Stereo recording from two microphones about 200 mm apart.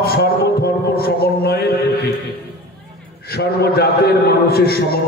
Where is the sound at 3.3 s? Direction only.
55° left (ahead or behind).